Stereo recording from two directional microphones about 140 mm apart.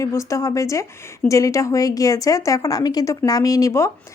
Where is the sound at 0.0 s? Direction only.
20° left (ahead or behind).